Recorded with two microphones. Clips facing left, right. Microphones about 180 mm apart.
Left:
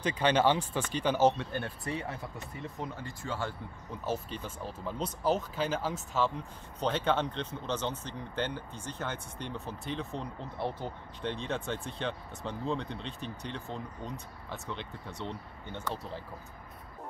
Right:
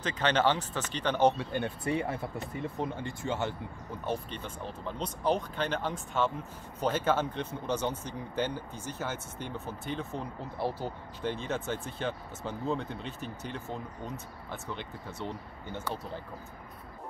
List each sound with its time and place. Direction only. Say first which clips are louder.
0.0 s speech: left 1 dB; 10° left (ahead or behind)
1.4 s speech: right 4 dB; 15° right (ahead or behind)
2.3 s speech: right 6 dB; 30° right (ahead or behind)
4.0 s speech: even; 5° left (ahead or behind)